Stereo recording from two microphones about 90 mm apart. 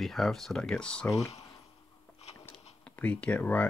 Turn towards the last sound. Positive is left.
turn(degrees=15)  # may be behind; listen again after turning